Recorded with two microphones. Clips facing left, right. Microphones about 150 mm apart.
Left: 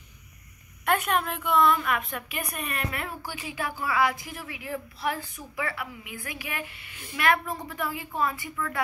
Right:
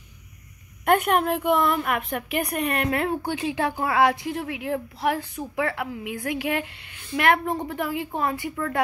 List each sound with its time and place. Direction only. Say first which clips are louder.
0.8 s a woman's voice: right 6 dB; 55° right (ahead or behind)